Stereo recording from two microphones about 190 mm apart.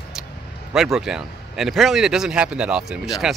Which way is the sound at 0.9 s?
Centre (ahead or behind).